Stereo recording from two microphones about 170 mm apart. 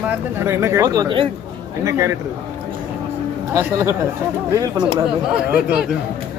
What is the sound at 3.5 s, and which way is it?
Speech, 15° right (ahead or behind).